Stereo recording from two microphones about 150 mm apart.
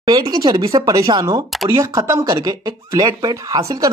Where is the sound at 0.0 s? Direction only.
25° right (ahead or behind).